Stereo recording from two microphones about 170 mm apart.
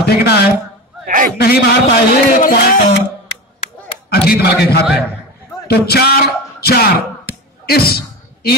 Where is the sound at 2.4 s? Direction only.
55° left (ahead or behind).